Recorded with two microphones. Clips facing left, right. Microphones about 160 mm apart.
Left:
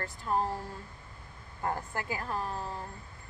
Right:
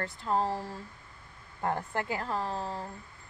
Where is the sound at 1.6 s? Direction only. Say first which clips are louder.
Right 3 dB; 25° right (ahead or behind).